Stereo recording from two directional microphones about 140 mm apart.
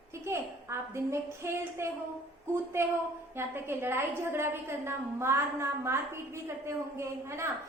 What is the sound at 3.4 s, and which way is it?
A woman's voice, 15° right (ahead or behind).